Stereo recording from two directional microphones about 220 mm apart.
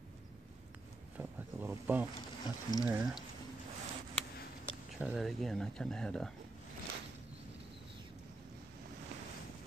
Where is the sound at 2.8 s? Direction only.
10° right (ahead or behind).